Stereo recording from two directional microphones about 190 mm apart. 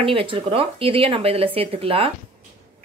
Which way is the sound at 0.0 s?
30° right (ahead or behind).